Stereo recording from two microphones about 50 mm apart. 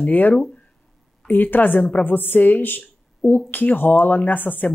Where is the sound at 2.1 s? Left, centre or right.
Left.